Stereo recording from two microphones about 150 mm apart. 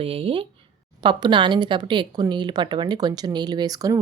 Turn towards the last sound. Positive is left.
turn(degrees=-25)  # may be behind; listen again after turning